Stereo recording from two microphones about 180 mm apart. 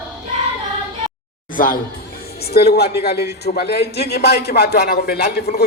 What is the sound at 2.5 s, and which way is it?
A man's voice, 60° left (ahead or behind).